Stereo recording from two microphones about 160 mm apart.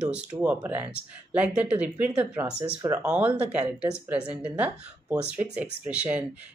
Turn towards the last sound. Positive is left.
turn(degrees=-10)  # may be behind; listen again after turning